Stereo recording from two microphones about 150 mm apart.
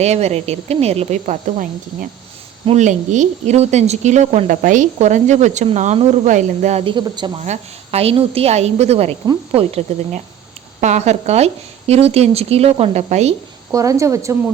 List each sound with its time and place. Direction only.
0.0 s a woman's voice: 45° right (ahead or behind)
6.8 s speech: 30° right (ahead or behind)
7.4 s a woman's voice: 45° right (ahead or behind)
10.8 s a woman's voice: 50° right (ahead or behind)
13.7 s speech: 20° right (ahead or behind)